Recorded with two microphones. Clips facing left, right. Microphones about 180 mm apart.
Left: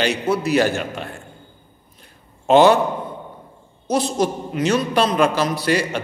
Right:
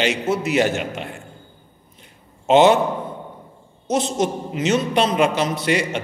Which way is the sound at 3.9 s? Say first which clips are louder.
Left 1 dB; 25° right (ahead or behind).